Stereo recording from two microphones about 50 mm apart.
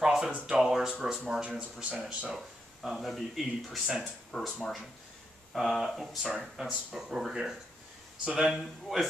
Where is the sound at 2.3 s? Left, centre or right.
Centre.